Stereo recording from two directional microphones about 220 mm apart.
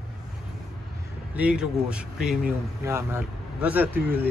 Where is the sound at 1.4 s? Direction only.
5° right (ahead or behind).